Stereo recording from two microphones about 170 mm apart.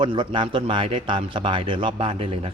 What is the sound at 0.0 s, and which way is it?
A man's voice, 30° right (ahead or behind).